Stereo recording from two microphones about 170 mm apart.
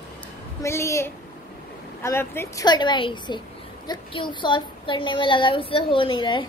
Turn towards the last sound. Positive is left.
turn(degrees=30)  # may be behind; listen again after turning